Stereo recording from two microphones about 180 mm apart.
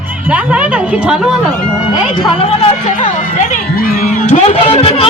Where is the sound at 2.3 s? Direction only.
30° left (ahead or behind).